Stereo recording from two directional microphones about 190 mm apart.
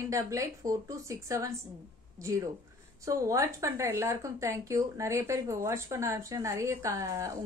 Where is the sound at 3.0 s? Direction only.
15° right (ahead or behind).